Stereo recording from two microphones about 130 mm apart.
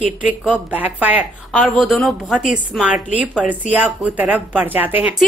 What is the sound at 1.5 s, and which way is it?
Speech, centre (ahead or behind).